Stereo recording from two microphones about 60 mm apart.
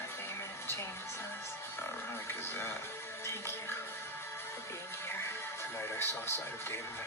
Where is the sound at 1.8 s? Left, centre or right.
Left.